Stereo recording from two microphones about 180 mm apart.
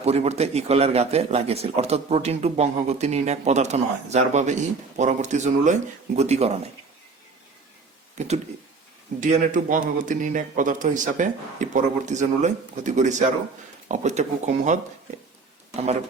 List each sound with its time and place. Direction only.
0.0 s a man's voice: 35° right (ahead or behind)
8.2 s a man's voice: 40° right (ahead or behind)